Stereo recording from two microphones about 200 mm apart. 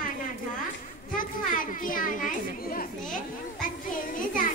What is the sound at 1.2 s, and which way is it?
A child's voice, 45° left (ahead or behind).